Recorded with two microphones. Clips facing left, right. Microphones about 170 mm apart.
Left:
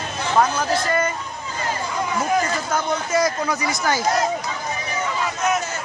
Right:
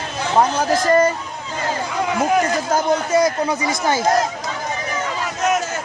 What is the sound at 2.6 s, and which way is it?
Speech, 35° right (ahead or behind).